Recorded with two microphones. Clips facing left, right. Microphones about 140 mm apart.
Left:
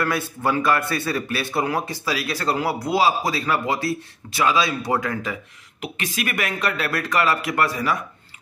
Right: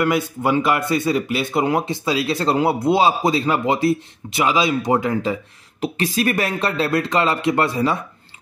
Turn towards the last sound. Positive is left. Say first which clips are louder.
# right 4 dB
turn(degrees=-25)  # may be behind; listen again after turning